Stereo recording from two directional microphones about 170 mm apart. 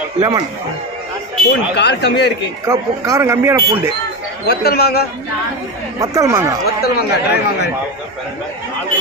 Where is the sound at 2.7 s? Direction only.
20° right (ahead or behind).